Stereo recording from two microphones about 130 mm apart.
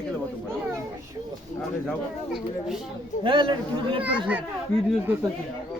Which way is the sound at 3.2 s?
40° right (ahead or behind).